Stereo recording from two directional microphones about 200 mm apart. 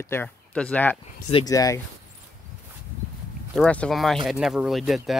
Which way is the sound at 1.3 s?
20° left (ahead or behind).